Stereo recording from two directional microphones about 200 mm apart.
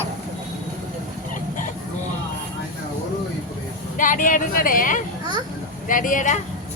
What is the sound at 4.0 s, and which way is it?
Speech, 40° left (ahead or behind).